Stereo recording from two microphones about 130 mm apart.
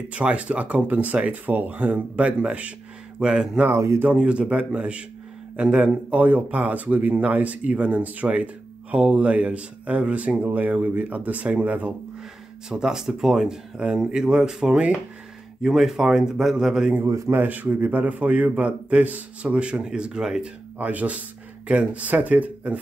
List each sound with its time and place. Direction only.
0.1 s a man's voice: 10° right (ahead or behind)
3.7 s speech: 20° right (ahead or behind)
4.1 s a man's voice: 10° right (ahead or behind)
17.0 s a man's voice: 20° right (ahead or behind)